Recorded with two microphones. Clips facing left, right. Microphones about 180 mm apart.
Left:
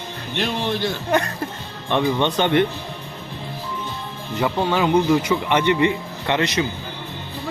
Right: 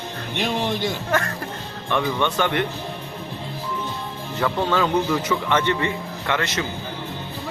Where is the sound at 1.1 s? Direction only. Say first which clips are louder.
Left 3 dB; 20° left (ahead or behind).